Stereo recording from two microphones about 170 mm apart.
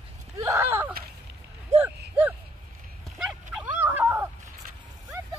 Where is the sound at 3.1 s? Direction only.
5° right (ahead or behind).